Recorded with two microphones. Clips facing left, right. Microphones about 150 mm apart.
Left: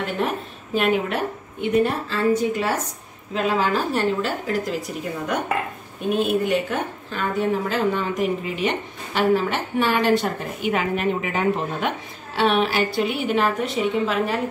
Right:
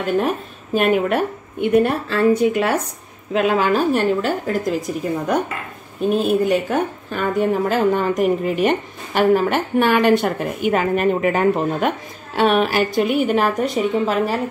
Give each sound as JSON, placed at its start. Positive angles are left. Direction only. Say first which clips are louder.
{"t": 0.7, "sound": "a woman's voice", "louder": "right 4 dB", "side_deg": -50}